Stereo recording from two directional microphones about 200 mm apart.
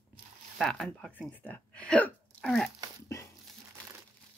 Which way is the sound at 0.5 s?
Centre (ahead or behind).